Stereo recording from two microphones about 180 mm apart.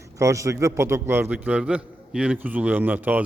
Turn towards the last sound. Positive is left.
turn(degrees=-10)  # may be behind; listen again after turning